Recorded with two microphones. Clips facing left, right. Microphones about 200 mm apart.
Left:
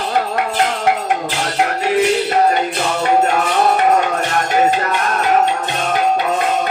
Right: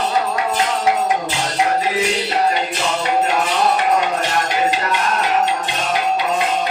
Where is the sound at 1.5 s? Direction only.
60° left (ahead or behind).